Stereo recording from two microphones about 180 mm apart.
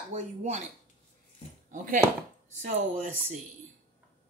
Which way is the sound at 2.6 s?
45° right (ahead or behind).